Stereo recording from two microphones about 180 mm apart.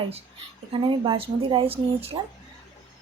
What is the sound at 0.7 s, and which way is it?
Speech, 30° right (ahead or behind).